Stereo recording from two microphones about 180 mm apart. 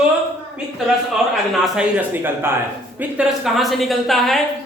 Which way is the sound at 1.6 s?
10° right (ahead or behind).